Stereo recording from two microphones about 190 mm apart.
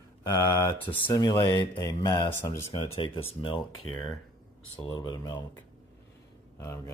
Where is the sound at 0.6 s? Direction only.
10° left (ahead or behind).